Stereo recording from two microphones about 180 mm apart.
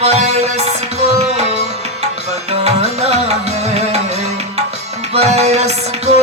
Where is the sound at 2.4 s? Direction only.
35° right (ahead or behind).